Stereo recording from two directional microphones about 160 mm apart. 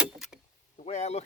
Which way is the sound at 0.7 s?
45° left (ahead or behind).